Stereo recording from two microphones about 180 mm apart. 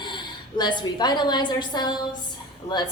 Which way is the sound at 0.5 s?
25° left (ahead or behind).